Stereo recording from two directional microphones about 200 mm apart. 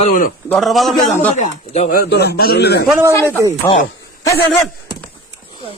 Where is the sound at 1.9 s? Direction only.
50° left (ahead or behind).